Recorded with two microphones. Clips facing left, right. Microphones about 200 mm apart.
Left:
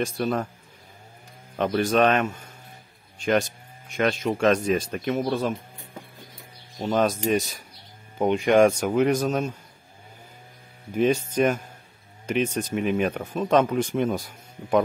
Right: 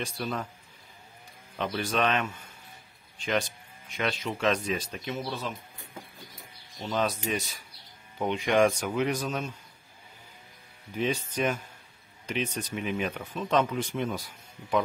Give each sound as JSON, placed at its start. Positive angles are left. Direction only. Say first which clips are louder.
{"t": 0.0, "sound": "speech", "louder": "left 8 dB", "side_deg": 50}
{"t": 1.6, "sound": "speech", "louder": "left 8 dB", "side_deg": 45}
{"t": 6.8, "sound": "speech", "louder": "left 7 dB", "side_deg": 45}
{"t": 11.0, "sound": "speech", "louder": "left 8 dB", "side_deg": 50}